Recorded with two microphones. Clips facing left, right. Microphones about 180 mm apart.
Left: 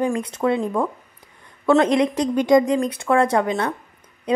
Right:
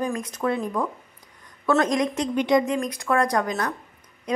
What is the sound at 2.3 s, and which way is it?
A woman's voice, 40° left (ahead or behind).